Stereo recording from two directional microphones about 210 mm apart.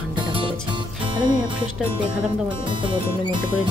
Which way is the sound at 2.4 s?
25° right (ahead or behind).